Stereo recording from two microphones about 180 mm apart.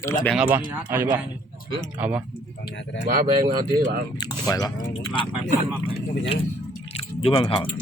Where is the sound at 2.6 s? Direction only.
80° left.